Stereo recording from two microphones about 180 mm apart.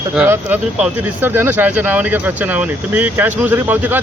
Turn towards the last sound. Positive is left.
turn(degrees=-10)  # may be behind; listen again after turning